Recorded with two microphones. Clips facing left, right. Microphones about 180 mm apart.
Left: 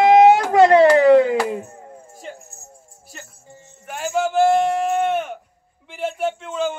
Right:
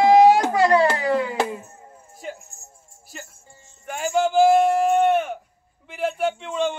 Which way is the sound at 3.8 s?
Centre (ahead or behind).